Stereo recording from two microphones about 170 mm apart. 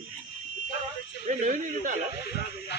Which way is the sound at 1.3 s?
45° right (ahead or behind).